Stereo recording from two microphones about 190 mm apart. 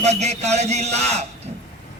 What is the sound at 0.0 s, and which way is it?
A man's voice, 35° right (ahead or behind).